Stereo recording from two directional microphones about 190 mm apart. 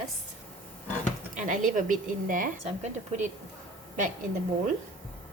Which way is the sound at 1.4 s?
40° right (ahead or behind).